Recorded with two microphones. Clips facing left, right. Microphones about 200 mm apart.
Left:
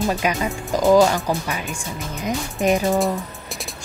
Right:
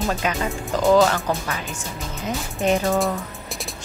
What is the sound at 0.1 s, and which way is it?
Speech, 15° left (ahead or behind).